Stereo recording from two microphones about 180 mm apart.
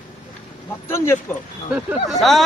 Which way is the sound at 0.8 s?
15° left (ahead or behind).